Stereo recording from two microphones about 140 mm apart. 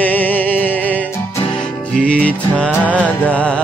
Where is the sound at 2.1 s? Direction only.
10° left (ahead or behind).